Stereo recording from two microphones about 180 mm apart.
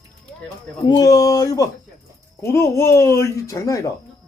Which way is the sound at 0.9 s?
20° left (ahead or behind).